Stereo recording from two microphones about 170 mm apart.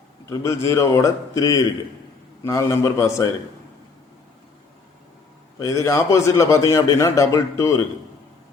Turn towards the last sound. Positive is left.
turn(degrees=20)  # may be behind; listen again after turning